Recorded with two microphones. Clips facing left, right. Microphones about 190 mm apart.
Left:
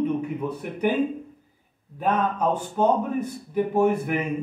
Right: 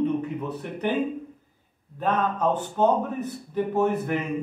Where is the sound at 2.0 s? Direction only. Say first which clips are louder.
Left 1 dB; 10° left (ahead or behind).